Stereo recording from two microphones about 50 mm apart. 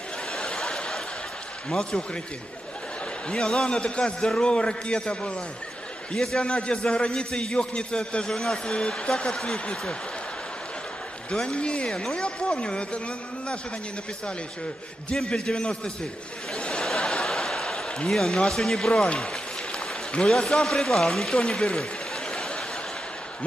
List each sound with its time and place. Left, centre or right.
0.4 s snicker: centre
1.7 s speech: centre
3.3 s a man's voice: centre
6.1 s speech: centre
6.4 s a man's voice: centre
8.3 s speech: centre
8.7 s speech: centre
11.2 s a man's voice: centre
15.2 s speech: centre
16.5 s a sound: left
17.2 s chuckle: centre
18.1 s speech: centre
22.1 s a sound: centre